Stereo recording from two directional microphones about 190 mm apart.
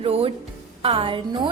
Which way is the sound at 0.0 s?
30° right (ahead or behind).